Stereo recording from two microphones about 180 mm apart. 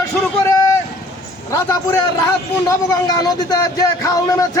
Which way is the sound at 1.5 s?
15° left (ahead or behind).